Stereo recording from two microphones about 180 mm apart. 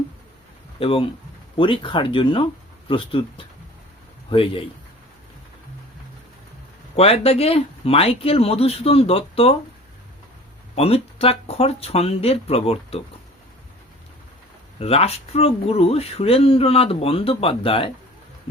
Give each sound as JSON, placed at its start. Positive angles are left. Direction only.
{"t": 0.8, "sound": "speech", "side_deg": 30}
{"t": 6.9, "sound": "speech", "side_deg": 35}
{"t": 10.8, "sound": "speech", "side_deg": 35}
{"t": 14.8, "sound": "speech", "side_deg": 35}